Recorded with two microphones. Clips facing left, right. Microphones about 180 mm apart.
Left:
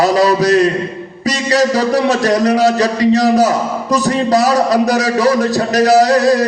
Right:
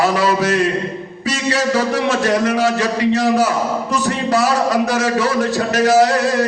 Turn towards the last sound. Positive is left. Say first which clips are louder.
# left 4 dB
turn(degrees=40)  # may be behind; listen again after turning